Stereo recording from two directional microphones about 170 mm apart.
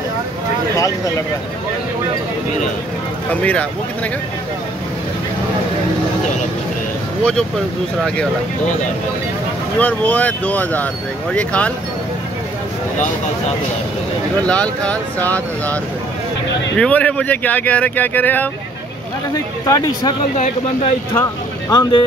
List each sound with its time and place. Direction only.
0.7 s speech: 20° left (ahead or behind)
3.3 s speech: 10° left (ahead or behind)
7.2 s speech: 5° left (ahead or behind)
9.8 s speech: 10° left (ahead or behind)
14.4 s speech: 5° left (ahead or behind)
19.6 s speech: 25° left (ahead or behind)
20.3 s speech: 45° left (ahead or behind)
21.1 s speech: 15° left (ahead or behind)